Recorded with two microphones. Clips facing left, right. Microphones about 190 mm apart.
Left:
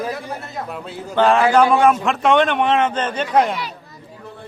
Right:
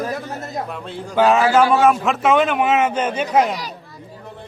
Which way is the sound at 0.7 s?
5° left (ahead or behind).